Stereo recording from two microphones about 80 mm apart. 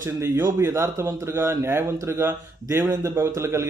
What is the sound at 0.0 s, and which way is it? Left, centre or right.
Speech, right.